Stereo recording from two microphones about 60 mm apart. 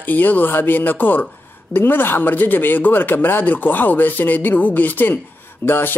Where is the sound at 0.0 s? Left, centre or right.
Left.